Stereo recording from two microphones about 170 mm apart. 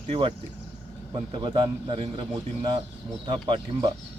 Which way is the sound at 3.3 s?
30° right (ahead or behind).